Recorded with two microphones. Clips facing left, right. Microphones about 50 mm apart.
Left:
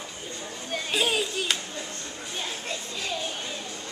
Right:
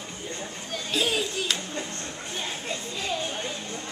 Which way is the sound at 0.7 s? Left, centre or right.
Centre.